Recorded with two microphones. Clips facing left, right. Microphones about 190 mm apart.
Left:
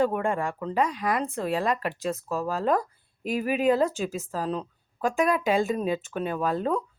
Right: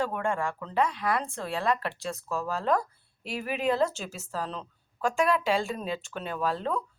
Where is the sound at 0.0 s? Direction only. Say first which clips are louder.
Left 4 dB; 15° left (ahead or behind).